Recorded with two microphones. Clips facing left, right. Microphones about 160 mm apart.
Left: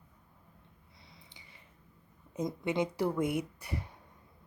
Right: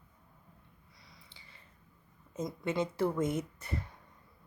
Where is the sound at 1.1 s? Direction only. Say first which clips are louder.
Left 1 dB; 20° left (ahead or behind).